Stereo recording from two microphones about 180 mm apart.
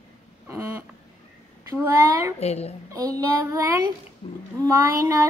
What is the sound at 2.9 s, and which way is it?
Speech, 20° right (ahead or behind).